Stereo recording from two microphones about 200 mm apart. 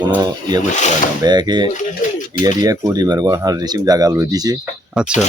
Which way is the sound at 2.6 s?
20° right (ahead or behind).